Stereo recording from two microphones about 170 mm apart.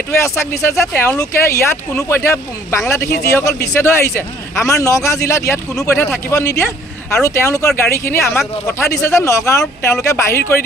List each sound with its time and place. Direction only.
0.2 s a man's voice: 15° left (ahead or behind)